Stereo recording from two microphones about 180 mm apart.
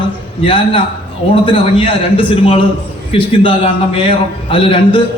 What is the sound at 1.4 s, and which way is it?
A man's voice, 30° left (ahead or behind).